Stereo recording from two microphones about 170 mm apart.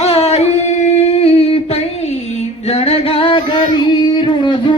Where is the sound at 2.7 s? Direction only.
35° left (ahead or behind).